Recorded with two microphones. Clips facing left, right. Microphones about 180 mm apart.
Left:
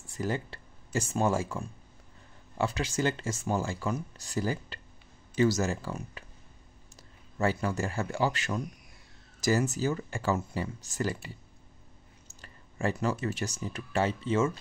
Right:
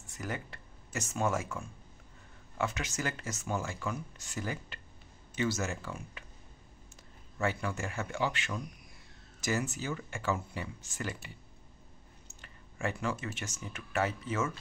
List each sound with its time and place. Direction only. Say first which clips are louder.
0.1 s speech: left 7 dB; 30° left (ahead or behind)
7.3 s speech: left 5 dB; 35° left (ahead or behind)
12.3 s speech: left 4 dB; 35° left (ahead or behind)